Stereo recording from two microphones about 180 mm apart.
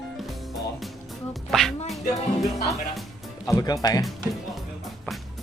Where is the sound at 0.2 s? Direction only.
Centre (ahead or behind).